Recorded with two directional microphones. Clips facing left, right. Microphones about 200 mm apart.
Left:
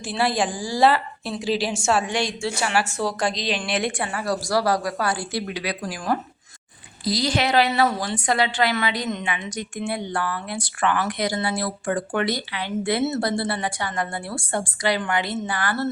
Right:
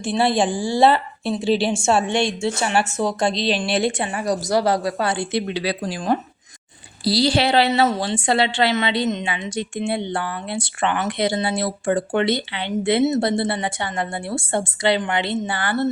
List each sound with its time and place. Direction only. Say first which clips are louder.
0.0 s a woman's voice: right 4 dB; 25° right (ahead or behind)